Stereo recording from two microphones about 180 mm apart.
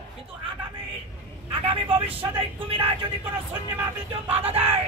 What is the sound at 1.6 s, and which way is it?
Vehicle, 30° right (ahead or behind).